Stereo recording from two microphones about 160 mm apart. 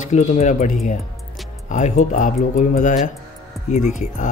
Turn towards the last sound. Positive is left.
turn(degrees=50)  # may be behind; listen again after turning